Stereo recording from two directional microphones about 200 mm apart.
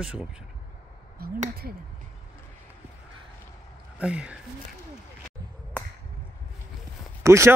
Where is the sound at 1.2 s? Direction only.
50° right (ahead or behind).